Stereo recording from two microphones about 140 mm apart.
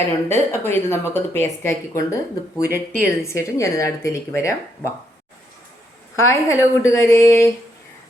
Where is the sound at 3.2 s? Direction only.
20° left (ahead or behind).